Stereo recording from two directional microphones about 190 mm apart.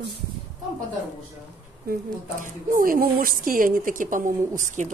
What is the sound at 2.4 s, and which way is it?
Speech, 45° right (ahead or behind).